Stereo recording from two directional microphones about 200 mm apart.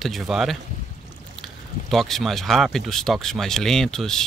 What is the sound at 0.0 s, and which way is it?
Speech, centre (ahead or behind).